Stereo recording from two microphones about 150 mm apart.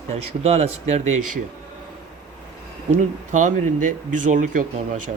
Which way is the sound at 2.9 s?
55° right (ahead or behind).